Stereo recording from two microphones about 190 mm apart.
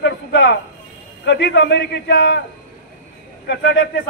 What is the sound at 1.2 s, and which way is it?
A man's voice, 65° left (ahead or behind).